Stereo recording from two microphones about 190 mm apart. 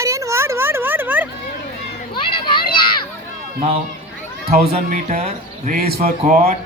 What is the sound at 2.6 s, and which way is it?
Children playing, 50° left (ahead or behind).